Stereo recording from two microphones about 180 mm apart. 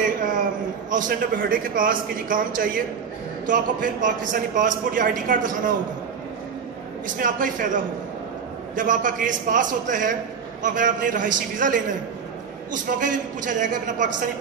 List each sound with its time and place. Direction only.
0.8 s a man's voice: 45° right (ahead or behind)
7.1 s a man's voice: 50° right (ahead or behind)